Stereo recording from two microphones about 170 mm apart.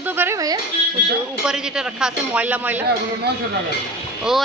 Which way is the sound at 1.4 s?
5° right (ahead or behind).